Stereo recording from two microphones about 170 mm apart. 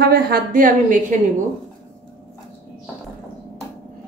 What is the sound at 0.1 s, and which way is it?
Speech, 60° right (ahead or behind).